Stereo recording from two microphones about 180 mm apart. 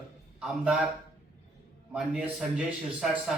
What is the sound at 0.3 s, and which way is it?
Speech, 5° right (ahead or behind).